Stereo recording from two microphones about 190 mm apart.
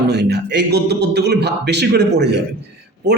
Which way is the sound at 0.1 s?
60° right (ahead or behind).